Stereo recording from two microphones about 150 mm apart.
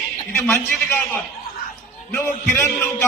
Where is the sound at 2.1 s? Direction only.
15° left (ahead or behind).